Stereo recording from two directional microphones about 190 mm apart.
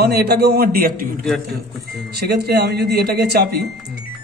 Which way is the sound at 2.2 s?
60° right (ahead or behind).